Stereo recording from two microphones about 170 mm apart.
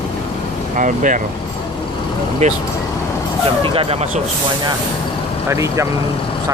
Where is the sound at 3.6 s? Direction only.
30° right (ahead or behind).